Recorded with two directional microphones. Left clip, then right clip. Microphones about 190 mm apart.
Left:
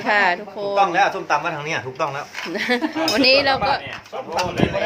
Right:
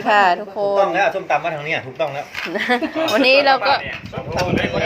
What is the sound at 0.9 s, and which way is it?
A man's voice, 45° left (ahead or behind).